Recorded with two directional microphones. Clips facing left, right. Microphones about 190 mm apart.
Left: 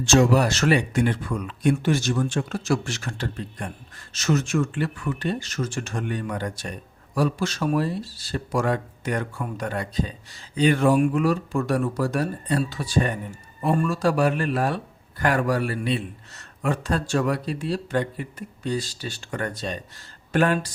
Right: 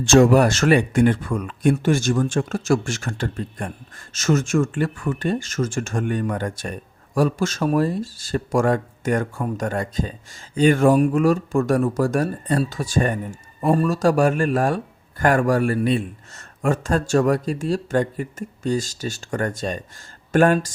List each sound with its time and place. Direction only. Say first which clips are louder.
0.0 s speech: right 5 dB; 50° right (ahead or behind)